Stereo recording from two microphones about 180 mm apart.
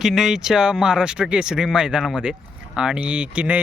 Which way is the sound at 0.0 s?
Centre (ahead or behind).